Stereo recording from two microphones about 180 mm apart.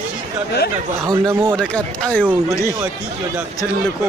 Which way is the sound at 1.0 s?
15° right (ahead or behind).